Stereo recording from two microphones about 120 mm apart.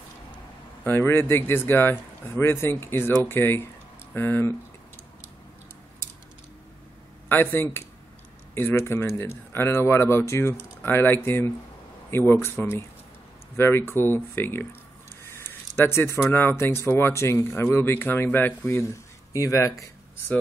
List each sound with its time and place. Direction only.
0.8 s speech: 20° left (ahead or behind)
7.2 s speech: 15° left (ahead or behind)